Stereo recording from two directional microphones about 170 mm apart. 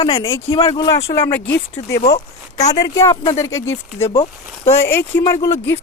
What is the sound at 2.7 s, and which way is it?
Speech, 20° left (ahead or behind).